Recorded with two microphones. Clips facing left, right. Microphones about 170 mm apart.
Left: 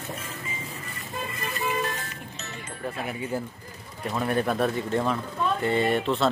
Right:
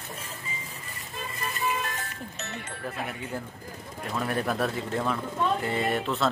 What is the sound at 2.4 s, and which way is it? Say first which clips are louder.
Music: right 3 dB; 60° right (ahead or behind).